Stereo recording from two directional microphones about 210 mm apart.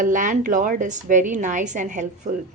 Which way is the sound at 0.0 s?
40° right (ahead or behind).